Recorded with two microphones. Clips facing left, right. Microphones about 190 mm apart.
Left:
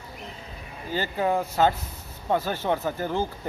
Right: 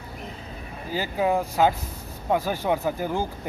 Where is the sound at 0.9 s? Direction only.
10° right (ahead or behind).